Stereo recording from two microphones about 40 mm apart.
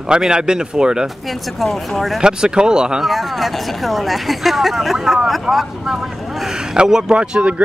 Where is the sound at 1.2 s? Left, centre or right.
Centre.